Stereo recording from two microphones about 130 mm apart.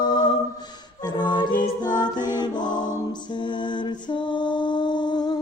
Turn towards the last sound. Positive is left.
turn(degrees=35)  # may be behind; listen again after turning